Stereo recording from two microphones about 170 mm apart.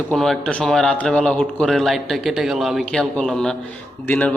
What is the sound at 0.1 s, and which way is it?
A man's voice, centre (ahead or behind).